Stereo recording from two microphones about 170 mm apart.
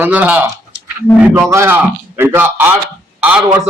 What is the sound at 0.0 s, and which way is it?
A man's voice, 10° right (ahead or behind).